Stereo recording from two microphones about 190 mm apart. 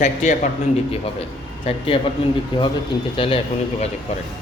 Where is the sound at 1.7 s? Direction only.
30° left (ahead or behind).